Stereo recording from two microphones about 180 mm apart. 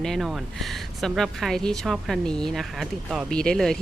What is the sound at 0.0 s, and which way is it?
Speech, centre (ahead or behind).